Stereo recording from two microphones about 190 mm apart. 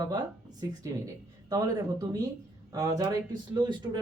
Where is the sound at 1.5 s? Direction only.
20° right (ahead or behind).